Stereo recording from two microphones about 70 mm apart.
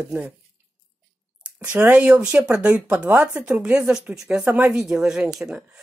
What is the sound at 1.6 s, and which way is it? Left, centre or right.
Speech, right.